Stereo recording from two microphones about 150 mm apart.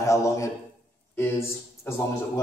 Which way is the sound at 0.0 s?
20° left (ahead or behind).